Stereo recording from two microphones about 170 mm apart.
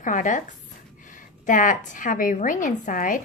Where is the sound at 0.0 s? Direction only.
50° left (ahead or behind).